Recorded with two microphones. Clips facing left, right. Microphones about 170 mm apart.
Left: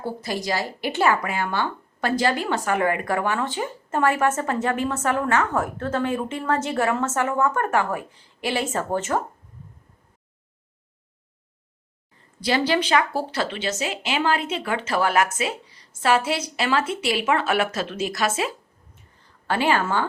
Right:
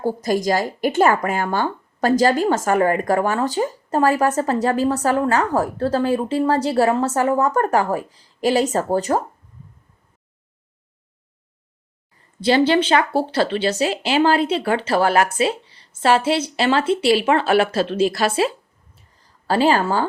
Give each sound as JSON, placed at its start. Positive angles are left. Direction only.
{"t": 0.0, "sound": "speech", "side_deg": -45}
{"t": 12.4, "sound": "a woman's voice", "side_deg": -30}